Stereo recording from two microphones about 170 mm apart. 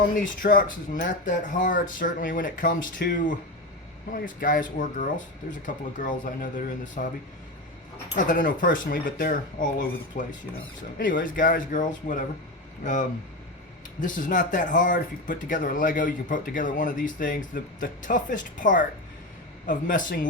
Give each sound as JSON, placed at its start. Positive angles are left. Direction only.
{"t": 0.2, "sound": "speech", "side_deg": 55}